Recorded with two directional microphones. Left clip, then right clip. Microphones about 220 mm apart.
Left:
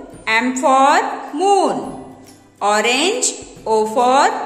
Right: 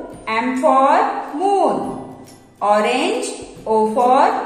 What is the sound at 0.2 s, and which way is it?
A woman's voice, 40° left (ahead or behind).